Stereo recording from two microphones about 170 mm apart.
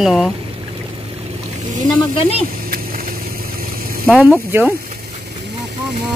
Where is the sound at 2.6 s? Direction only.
55° right (ahead or behind).